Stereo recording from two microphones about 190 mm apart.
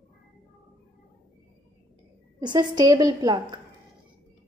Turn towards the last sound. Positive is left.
turn(degrees=-20)  # may be behind; listen again after turning